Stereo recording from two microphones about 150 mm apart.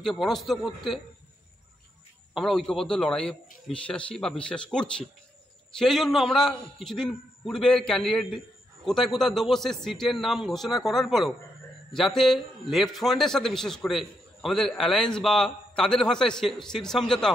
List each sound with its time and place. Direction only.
0.0 s a man's voice: 5° left (ahead or behind)
2.3 s a man's voice: centre (ahead or behind)